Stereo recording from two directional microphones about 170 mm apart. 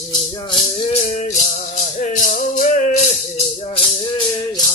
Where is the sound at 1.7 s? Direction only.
45° left (ahead or behind).